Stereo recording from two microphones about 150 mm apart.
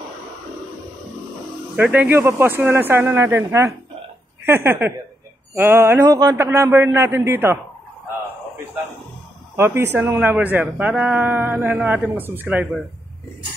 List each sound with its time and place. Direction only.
1.8 s speech: 10° right (ahead or behind)
9.6 s speech: 15° right (ahead or behind)